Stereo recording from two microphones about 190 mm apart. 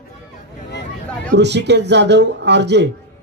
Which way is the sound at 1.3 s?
65° right (ahead or behind).